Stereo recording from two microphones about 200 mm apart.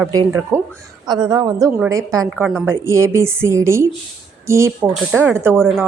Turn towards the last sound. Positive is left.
turn(degrees=5)  # may be behind; listen again after turning